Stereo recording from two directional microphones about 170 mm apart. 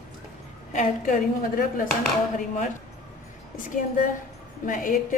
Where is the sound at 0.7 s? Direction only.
55° left (ahead or behind).